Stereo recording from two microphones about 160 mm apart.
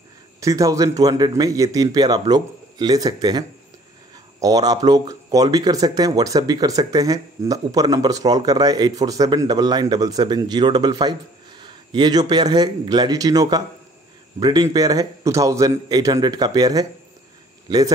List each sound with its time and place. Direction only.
0.4 s a man's voice: 20° right (ahead or behind)